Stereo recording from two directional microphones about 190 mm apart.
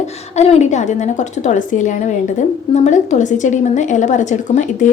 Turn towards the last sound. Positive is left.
turn(degrees=40)  # may be behind; listen again after turning